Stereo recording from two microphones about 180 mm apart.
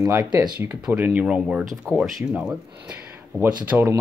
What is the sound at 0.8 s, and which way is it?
Speech, 10° right (ahead or behind).